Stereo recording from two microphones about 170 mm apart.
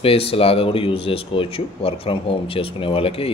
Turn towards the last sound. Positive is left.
turn(degrees=35)  # may be behind; listen again after turning